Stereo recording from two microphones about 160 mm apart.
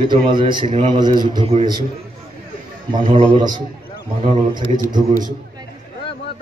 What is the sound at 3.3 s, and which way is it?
Speech, 25° right (ahead or behind).